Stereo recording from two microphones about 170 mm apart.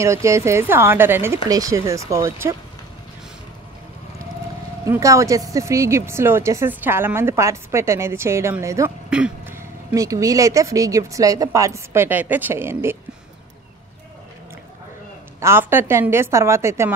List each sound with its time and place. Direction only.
0.0 s a woman's voice: 15° right (ahead or behind)
4.8 s a woman's voice: 20° right (ahead or behind)
15.4 s a woman's voice: 15° right (ahead or behind)